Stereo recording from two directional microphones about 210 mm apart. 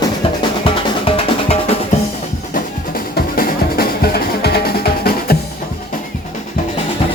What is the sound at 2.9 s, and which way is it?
Music, 45° left (ahead or behind).